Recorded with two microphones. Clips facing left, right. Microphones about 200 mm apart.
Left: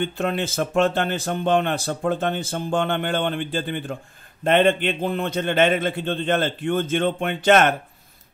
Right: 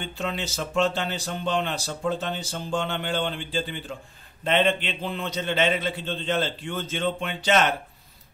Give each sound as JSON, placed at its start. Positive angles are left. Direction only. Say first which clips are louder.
{"t": 0.0, "sound": "a man's voice", "louder": "left 7 dB", "side_deg": 55}